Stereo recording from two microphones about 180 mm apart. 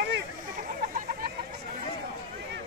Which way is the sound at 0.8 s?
55° right (ahead or behind).